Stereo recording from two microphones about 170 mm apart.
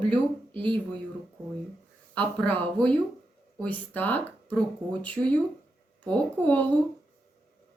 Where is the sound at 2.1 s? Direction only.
10° left (ahead or behind).